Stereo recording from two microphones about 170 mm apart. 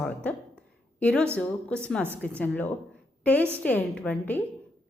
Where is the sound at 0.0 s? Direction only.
5° left (ahead or behind).